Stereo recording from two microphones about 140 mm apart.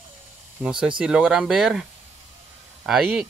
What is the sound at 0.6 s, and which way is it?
Speech, 15° right (ahead or behind).